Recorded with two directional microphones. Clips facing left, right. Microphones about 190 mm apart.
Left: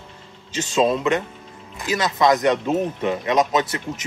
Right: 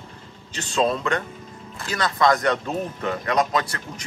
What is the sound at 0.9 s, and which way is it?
Speech, 20° left (ahead or behind).